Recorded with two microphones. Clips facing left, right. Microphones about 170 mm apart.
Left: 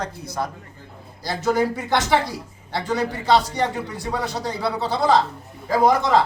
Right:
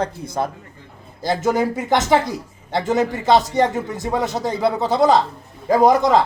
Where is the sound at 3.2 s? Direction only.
20° right (ahead or behind).